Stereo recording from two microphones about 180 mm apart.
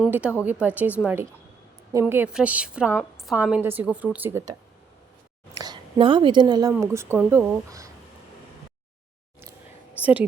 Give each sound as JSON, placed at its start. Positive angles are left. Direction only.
{"t": 0.1, "sound": "a woman's voice", "side_deg": -10}
{"t": 5.5, "sound": "a woman's voice", "side_deg": -25}
{"t": 10.0, "sound": "a woman's voice", "side_deg": -10}